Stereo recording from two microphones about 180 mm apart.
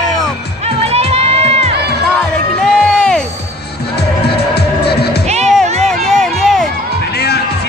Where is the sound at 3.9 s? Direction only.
65° left (ahead or behind).